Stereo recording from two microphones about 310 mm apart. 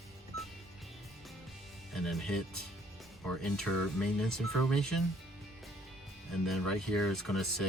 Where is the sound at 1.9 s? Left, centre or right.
Centre.